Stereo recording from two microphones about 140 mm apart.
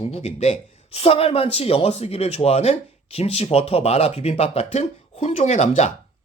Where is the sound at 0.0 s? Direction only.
50° left (ahead or behind).